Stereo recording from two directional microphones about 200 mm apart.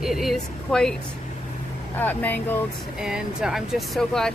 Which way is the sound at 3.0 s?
5° right (ahead or behind).